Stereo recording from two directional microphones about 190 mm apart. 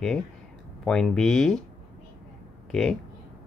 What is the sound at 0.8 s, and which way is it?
Speech, 5° left (ahead or behind).